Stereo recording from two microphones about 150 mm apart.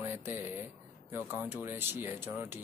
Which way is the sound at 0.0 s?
15° right (ahead or behind).